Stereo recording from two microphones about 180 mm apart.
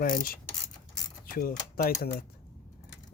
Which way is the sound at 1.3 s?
55° left (ahead or behind).